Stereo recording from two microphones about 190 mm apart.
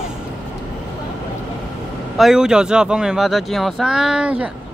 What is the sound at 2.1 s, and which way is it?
A man's voice, centre (ahead or behind).